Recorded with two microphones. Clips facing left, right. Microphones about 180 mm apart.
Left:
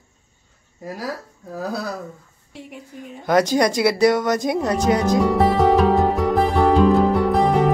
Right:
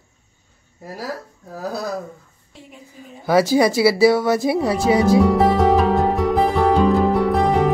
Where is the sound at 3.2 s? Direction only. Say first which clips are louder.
Right 2 dB; 5° right (ahead or behind).